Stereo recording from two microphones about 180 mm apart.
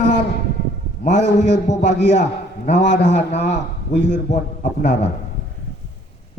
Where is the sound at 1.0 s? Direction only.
40° left (ahead or behind).